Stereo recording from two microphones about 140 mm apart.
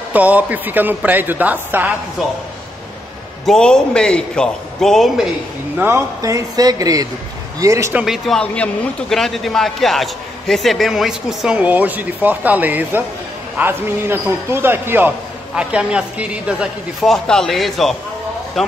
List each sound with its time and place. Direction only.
0.1 s speech: 10° right (ahead or behind)
3.4 s a man's voice: 5° left (ahead or behind)
5.8 s speech: 20° right (ahead or behind)
7.9 s a man's voice: 5° right (ahead or behind)